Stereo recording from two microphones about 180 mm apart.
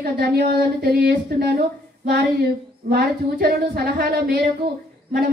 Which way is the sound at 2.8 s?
55° right (ahead or behind).